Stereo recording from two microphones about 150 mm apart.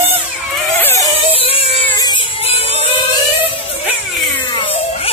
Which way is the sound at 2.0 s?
30° left (ahead or behind).